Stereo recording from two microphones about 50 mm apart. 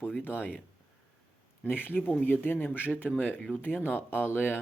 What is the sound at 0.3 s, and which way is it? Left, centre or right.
Speech, left.